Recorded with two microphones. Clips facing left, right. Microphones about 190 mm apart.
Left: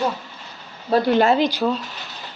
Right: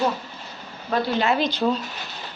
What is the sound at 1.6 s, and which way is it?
Speech, 5° right (ahead or behind).